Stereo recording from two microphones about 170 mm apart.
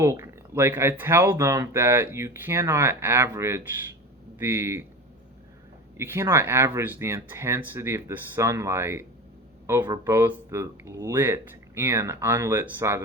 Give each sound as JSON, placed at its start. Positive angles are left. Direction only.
{"t": 0.0, "sound": "speech", "side_deg": -15}
{"t": 6.0, "sound": "speech", "side_deg": -15}